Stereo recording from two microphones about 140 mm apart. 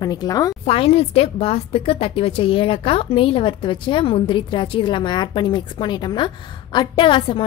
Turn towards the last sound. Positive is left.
turn(degrees=35)  # may be behind; listen again after turning